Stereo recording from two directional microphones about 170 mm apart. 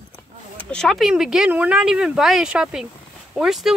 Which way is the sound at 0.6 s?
5° left (ahead or behind).